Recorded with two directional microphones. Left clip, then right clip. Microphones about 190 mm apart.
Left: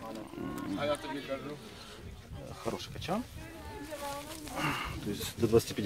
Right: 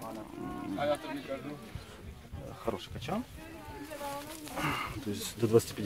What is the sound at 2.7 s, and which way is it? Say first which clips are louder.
Speech: even; 45° left (ahead or behind).